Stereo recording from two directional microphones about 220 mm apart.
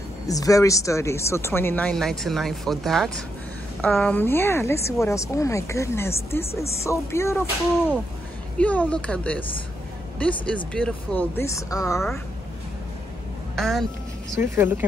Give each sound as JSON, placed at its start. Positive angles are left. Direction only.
{"t": 0.3, "sound": "speech", "side_deg": 15}
{"t": 13.6, "sound": "speech", "side_deg": 0}